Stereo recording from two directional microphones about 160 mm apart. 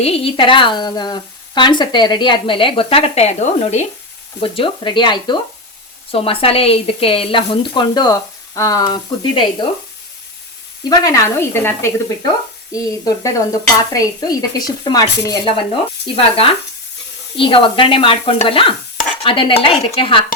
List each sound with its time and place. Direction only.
0.0 s a woman's voice: 35° left (ahead or behind)
4.4 s a woman's voice: 35° left (ahead or behind)
10.8 s a woman's voice: 20° left (ahead or behind)